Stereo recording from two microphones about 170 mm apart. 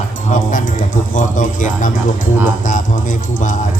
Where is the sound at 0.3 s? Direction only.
50° left (ahead or behind).